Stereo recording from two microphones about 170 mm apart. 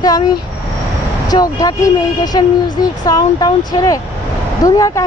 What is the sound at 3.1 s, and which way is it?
Speech, 20° left (ahead or behind).